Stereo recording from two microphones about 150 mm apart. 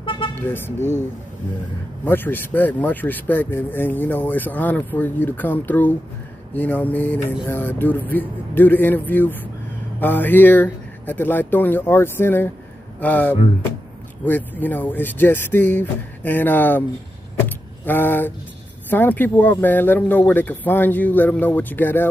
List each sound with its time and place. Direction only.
0.0 s vehicle: 35° left (ahead or behind)
0.4 s speech: 15° left (ahead or behind)
2.0 s speech: 15° left (ahead or behind)
17.5 s vehicle: 15° left (ahead or behind)
18.9 s speech: 10° left (ahead or behind)